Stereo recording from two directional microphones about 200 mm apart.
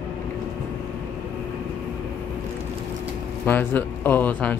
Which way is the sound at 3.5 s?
10° left (ahead or behind).